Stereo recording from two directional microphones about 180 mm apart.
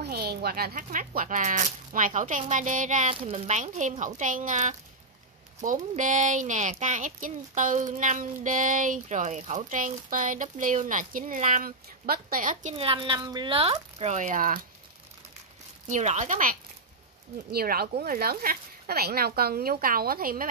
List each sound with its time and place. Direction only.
0.0 s a woman's voice: 60° right (ahead or behind)
12.7 s speech: 30° right (ahead or behind); by 14.7 s 50° right (ahead or behind)
15.9 s a woman's voice: 40° right (ahead or behind)
17.5 s speech: 60° right (ahead or behind)